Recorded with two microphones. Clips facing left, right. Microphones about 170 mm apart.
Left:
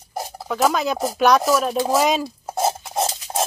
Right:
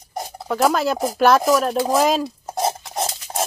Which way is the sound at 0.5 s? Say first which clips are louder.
Right 2 dB; centre (ahead or behind).